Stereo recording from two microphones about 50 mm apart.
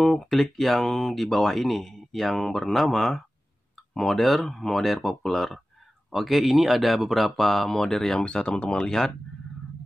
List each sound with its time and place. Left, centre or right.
0.0 s speech: centre
8.2 s speech: centre